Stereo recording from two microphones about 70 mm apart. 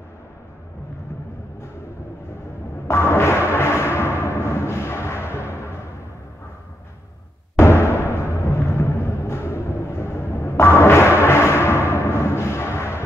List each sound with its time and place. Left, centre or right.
2.9 s music: left
7.5 s music: left
11.9 s timpani: left